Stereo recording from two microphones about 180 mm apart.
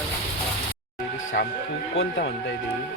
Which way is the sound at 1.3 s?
70° left (ahead or behind).